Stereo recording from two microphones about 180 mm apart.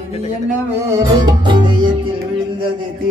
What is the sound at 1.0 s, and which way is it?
Music, 25° right (ahead or behind).